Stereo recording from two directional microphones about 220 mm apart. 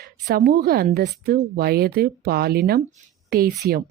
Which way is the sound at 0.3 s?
45° right (ahead or behind).